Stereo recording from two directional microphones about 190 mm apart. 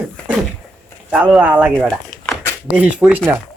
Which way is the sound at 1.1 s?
5° right (ahead or behind).